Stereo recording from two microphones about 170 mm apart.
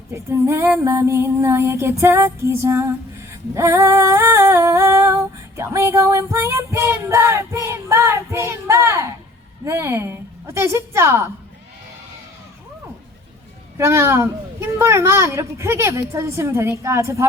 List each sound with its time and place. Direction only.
0.3 s female singing: 15° right (ahead or behind)
13.7 s female singing: 15° right (ahead or behind)